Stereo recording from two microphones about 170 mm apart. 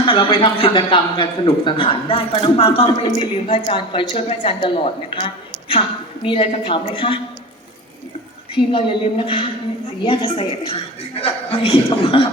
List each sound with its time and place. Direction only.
0.0 s a man's voice: 30° left (ahead or behind)
8.7 s a man's voice: 30° left (ahead or behind)